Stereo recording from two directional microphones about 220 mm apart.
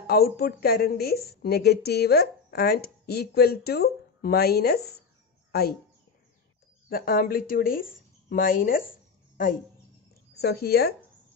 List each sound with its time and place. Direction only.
0.0 s a woman's voice: 45° left (ahead or behind)
6.9 s speech: 40° left (ahead or behind)
10.4 s a woman's voice: 45° left (ahead or behind)